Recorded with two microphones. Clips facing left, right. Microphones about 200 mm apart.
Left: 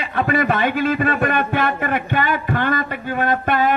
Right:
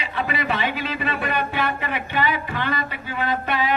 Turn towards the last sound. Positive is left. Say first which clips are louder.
# left 5 dB
turn(degrees=50)  # may be behind; listen again after turning